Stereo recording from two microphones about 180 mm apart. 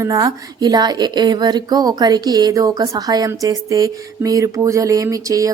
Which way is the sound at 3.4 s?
20° right (ahead or behind).